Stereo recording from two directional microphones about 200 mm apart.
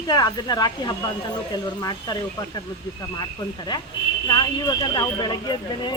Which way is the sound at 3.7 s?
20° left (ahead or behind).